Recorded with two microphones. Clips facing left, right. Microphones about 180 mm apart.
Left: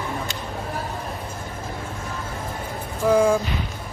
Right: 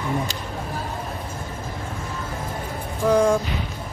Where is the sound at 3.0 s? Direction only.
5° left (ahead or behind).